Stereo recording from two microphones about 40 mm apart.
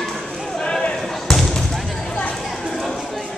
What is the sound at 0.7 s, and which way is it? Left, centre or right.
Basketball bounce, left.